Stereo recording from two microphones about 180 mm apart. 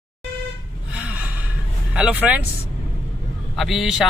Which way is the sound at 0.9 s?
10° right (ahead or behind).